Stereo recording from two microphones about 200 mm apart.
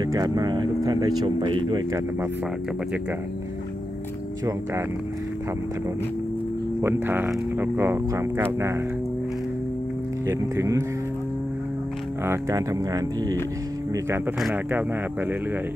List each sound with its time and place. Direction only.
0.0 s speech: 20° right (ahead or behind)
6.8 s speech: 10° right (ahead or behind)
10.2 s speech: 15° right (ahead or behind)
12.3 s speech: 15° right (ahead or behind)